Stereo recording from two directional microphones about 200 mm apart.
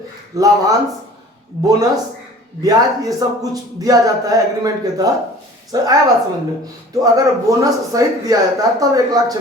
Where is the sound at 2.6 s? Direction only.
15° right (ahead or behind).